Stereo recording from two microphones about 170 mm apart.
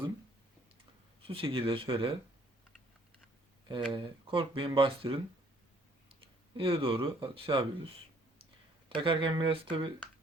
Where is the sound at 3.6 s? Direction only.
30° right (ahead or behind).